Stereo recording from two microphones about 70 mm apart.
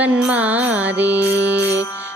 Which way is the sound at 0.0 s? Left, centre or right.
Right.